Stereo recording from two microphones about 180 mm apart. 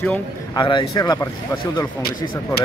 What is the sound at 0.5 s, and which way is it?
Speech, 25° left (ahead or behind).